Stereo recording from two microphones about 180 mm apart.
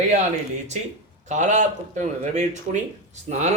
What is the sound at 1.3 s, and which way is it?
Speech, 40° right (ahead or behind).